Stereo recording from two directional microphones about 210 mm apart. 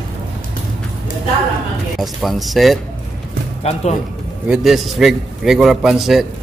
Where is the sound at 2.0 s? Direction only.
Centre (ahead or behind).